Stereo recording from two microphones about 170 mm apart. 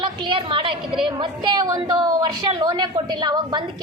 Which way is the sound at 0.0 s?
30° right (ahead or behind).